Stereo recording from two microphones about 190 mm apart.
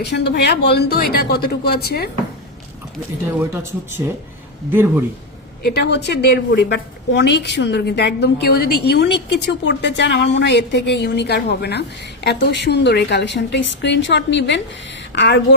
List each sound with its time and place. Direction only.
0.0 s a woman's voice: 60° left (ahead or behind)
3.5 s speech: 10° right (ahead or behind)
5.6 s a woman's voice: 60° left (ahead or behind)